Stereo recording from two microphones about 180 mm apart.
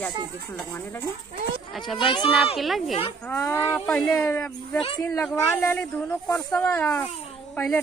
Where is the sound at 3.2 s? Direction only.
15° left (ahead or behind).